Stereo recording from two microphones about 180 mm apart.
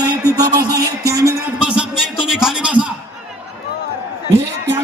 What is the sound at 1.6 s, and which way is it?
A man's voice, 5° right (ahead or behind).